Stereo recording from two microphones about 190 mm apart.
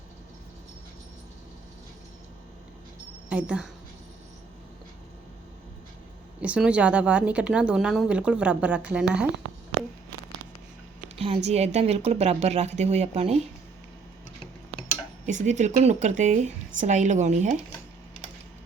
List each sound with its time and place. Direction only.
3.2 s a woman's voice: 5° right (ahead or behind)
6.4 s speech: 5° right (ahead or behind)
11.4 s speech: 35° right (ahead or behind)
15.3 s speech: 40° right (ahead or behind)